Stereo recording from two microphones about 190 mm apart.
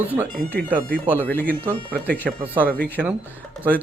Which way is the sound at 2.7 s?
10° left (ahead or behind).